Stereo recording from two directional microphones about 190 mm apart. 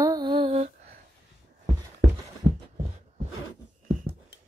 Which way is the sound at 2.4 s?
70° right (ahead or behind).